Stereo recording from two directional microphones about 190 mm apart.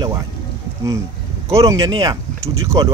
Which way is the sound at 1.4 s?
15° right (ahead or behind).